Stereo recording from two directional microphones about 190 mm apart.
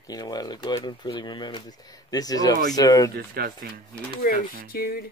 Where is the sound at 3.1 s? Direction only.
55° right (ahead or behind).